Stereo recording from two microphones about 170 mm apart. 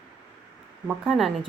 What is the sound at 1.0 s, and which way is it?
Speech, centre (ahead or behind).